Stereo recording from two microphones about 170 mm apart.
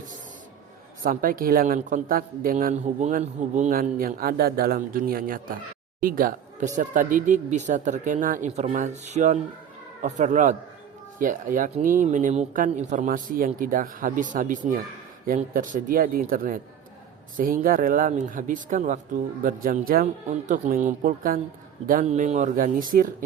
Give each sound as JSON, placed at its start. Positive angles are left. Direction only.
{"t": 1.0, "sound": "speech", "side_deg": -55}